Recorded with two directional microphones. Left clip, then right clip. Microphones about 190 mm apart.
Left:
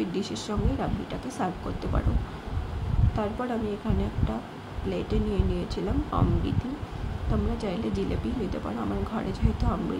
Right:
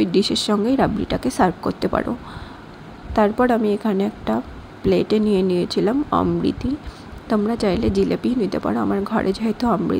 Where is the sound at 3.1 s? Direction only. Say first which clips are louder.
Right 14 dB; 50° right (ahead or behind).